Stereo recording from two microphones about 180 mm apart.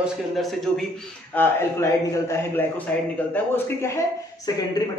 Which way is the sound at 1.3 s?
15° left (ahead or behind).